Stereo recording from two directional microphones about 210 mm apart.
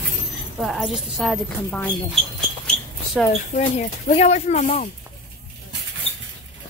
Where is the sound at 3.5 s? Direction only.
35° left (ahead or behind).